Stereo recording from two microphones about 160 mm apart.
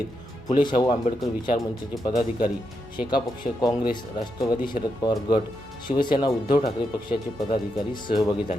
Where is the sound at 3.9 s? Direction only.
25° left (ahead or behind).